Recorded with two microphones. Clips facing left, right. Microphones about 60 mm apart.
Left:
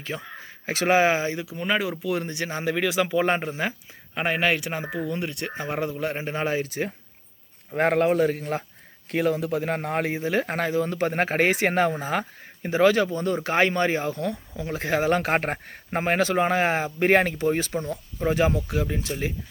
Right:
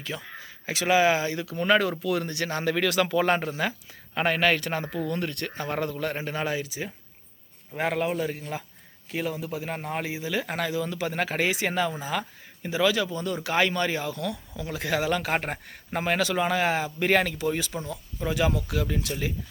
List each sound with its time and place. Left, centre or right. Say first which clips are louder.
0.0 s speech: left 2 dB; left
6.7 s speech: left 6 dB; left